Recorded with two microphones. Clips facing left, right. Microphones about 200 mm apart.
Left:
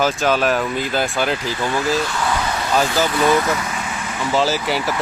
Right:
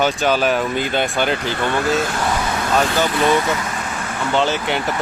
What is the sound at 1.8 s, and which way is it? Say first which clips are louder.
Speech: right 1 dB; 60° right (ahead or behind).